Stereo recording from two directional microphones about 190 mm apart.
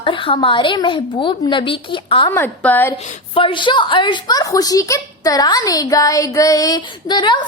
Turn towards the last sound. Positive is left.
turn(degrees=25)  # may be behind; listen again after turning